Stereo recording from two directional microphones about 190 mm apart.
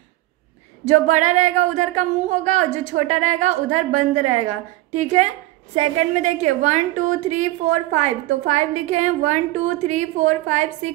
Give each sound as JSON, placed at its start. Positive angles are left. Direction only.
{"t": 0.8, "sound": "a woman's voice", "side_deg": -40}